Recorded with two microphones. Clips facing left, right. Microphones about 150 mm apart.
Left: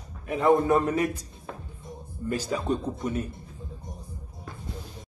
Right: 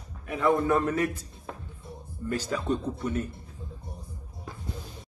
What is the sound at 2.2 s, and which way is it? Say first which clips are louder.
A man's voice: left 1 dB; 10° left (ahead or behind).